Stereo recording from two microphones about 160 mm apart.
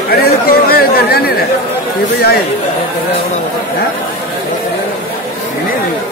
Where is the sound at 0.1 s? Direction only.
70° left (ahead or behind).